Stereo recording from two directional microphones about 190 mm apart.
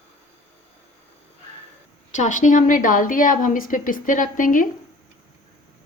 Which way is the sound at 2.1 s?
40° left (ahead or behind).